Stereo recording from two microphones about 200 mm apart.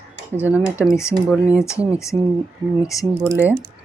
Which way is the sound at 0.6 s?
15° left (ahead or behind).